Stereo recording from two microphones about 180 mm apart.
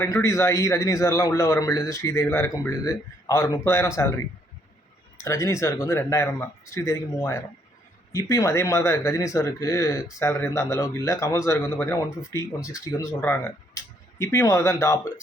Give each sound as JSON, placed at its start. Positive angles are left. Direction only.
{"t": 0.0, "sound": "a man's voice", "side_deg": 15}
{"t": 5.1, "sound": "speech", "side_deg": 15}